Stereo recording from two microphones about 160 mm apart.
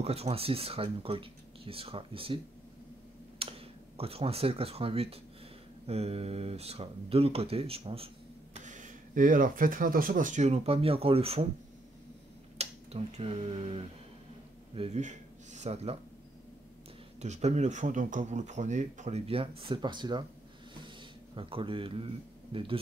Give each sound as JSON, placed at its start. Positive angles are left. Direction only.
{"t": 0.0, "sound": "speech", "side_deg": -40}
{"t": 8.5, "sound": "speech", "side_deg": -50}
{"t": 12.5, "sound": "speech", "side_deg": -40}
{"t": 17.2, "sound": "speech", "side_deg": -45}
{"t": 21.4, "sound": "speech", "side_deg": -35}